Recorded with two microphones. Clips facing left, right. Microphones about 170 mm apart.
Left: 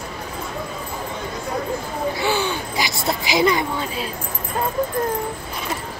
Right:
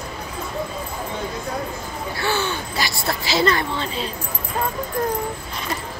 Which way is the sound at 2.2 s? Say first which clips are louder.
Right 1 dB; 15° left (ahead or behind).